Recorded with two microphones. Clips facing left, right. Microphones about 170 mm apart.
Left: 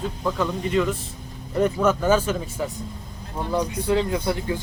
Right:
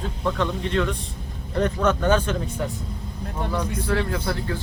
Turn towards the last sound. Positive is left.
turn(degrees=15)  # may be behind; listen again after turning